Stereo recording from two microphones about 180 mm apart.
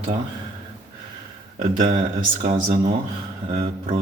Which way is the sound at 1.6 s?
40° right (ahead or behind).